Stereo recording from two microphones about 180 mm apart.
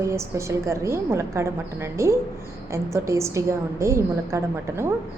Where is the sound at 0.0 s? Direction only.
15° right (ahead or behind).